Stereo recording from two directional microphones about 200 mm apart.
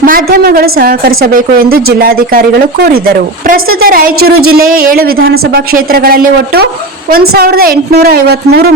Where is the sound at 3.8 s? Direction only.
45° right (ahead or behind).